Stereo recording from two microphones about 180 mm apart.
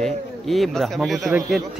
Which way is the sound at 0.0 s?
Centre (ahead or behind).